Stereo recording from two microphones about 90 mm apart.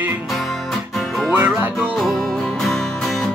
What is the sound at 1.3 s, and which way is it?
Music, 20° right (ahead or behind).